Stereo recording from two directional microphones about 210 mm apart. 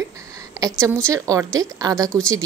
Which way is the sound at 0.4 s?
15° right (ahead or behind).